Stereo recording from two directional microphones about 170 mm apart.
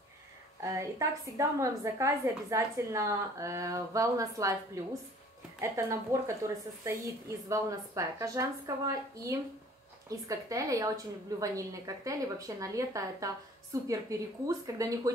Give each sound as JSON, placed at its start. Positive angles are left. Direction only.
{"t": 0.7, "sound": "a woman's voice", "side_deg": -20}
{"t": 5.6, "sound": "a woman's voice", "side_deg": -15}